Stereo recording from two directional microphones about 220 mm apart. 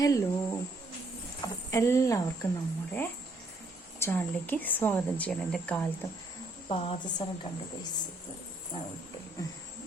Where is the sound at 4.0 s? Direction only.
10° left (ahead or behind).